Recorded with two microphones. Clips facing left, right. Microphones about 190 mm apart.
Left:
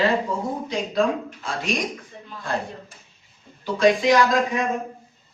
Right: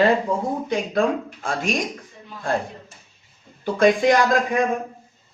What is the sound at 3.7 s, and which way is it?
Speech, 55° right (ahead or behind).